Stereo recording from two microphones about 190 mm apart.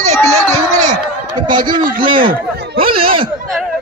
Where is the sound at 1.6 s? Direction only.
45° right (ahead or behind).